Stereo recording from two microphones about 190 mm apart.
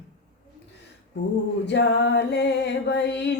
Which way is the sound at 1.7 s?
65° left (ahead or behind).